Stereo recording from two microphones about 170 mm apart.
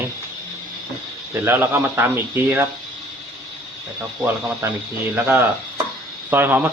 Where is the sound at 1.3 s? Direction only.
15° right (ahead or behind).